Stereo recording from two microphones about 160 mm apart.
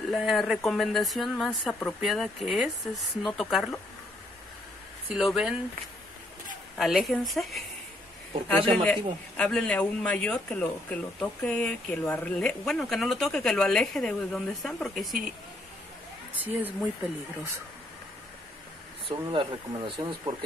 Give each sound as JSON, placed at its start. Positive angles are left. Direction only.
{"t": 0.1, "sound": "speech", "side_deg": 0}
{"t": 5.1, "sound": "speech", "side_deg": -5}
{"t": 6.8, "sound": "a man's voice", "side_deg": 0}
{"t": 16.3, "sound": "speech", "side_deg": -10}
{"t": 19.0, "sound": "speech", "side_deg": -30}